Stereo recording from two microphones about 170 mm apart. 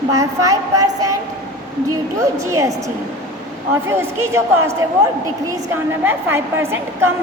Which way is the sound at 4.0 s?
15° right (ahead or behind).